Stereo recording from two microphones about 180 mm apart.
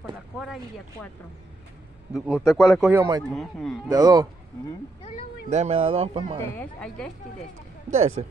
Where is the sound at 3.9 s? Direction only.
20° right (ahead or behind).